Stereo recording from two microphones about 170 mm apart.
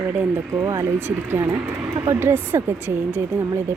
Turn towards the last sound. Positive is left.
turn(degrees=-15)  # may be behind; listen again after turning